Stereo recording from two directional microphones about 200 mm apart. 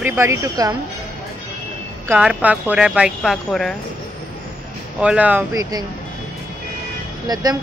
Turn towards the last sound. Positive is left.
turn(degrees=-20)  # may be behind; listen again after turning